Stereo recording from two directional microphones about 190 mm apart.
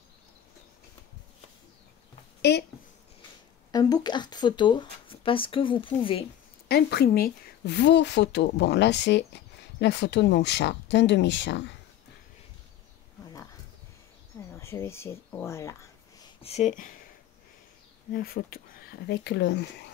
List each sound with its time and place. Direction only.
2.5 s a woman's voice: 60° left (ahead or behind)
3.7 s speech: 20° left (ahead or behind)
6.7 s a woman's voice: 55° left (ahead or behind)
14.5 s speech: 15° left (ahead or behind)
16.4 s speech: 35° left (ahead or behind)
18.1 s a woman's voice: 50° left (ahead or behind)